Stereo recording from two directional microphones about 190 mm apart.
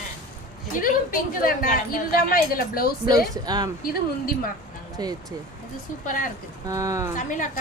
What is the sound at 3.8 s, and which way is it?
Speech, 50° left (ahead or behind).